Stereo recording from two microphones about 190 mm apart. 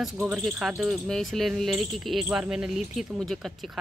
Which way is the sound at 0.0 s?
Centre (ahead or behind).